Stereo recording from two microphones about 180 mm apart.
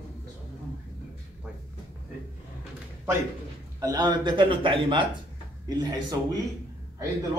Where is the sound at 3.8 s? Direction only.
25° right (ahead or behind).